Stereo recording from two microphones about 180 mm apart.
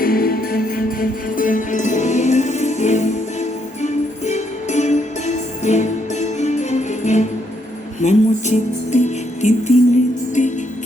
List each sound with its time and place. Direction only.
0.0 s music: 55° left (ahead or behind)